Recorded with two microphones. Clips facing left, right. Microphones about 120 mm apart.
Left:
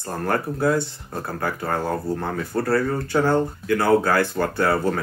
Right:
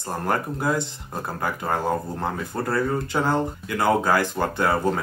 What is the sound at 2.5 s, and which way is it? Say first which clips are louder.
Speech: left 4 dB; 20° right (ahead or behind).